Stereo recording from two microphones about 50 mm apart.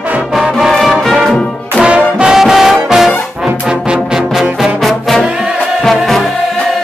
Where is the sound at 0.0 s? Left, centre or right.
Right.